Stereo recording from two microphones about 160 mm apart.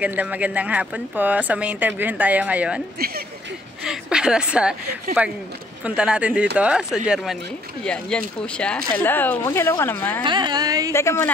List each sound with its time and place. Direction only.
0.0 s speech: 10° right (ahead or behind)
3.8 s a woman's voice: 5° right (ahead or behind)
7.8 s speech: 5° left (ahead or behind)
10.2 s a sound: 30° right (ahead or behind)
10.9 s speech: 15° left (ahead or behind)